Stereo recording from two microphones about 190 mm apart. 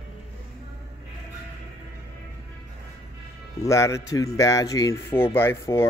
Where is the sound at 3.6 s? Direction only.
15° left (ahead or behind).